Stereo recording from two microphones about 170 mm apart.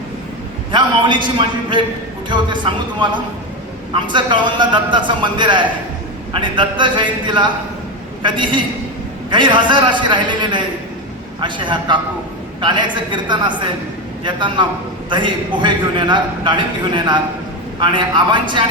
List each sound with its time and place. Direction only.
0.7 s a man's voice: 30° right (ahead or behind)